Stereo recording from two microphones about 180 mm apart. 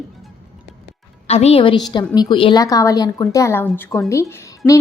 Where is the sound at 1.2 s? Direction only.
35° left (ahead or behind).